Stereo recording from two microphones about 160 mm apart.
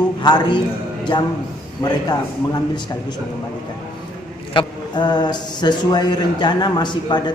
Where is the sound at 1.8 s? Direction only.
25° left (ahead or behind).